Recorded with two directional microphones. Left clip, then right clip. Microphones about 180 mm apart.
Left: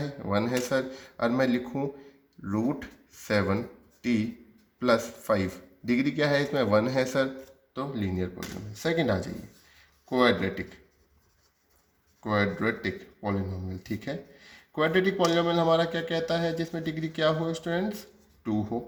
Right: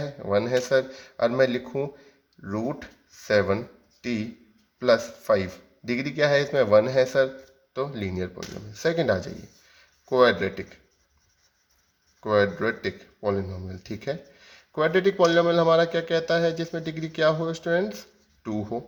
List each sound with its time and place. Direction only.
0.0 s a man's voice: 25° right (ahead or behind)
12.2 s a man's voice: 40° right (ahead or behind)